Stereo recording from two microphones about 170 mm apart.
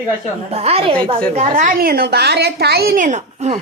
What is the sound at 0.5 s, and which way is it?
Speech, 35° right (ahead or behind).